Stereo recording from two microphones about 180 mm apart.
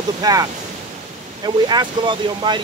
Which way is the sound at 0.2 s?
20° right (ahead or behind).